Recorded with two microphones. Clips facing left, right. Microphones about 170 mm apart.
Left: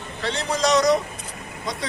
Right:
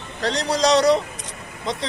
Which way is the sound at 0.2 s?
40° right (ahead or behind).